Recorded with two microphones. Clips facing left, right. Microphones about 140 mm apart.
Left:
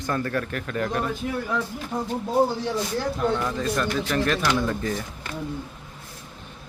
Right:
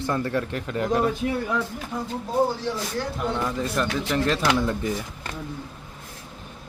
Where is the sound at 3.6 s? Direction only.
20° right (ahead or behind).